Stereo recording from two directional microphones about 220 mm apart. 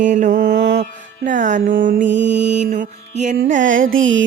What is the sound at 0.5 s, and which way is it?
Music, 50° right (ahead or behind).